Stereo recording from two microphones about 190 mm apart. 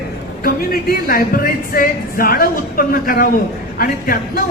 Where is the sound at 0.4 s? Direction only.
50° left (ahead or behind).